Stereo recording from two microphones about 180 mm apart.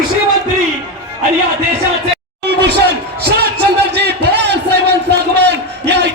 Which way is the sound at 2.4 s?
70° right (ahead or behind).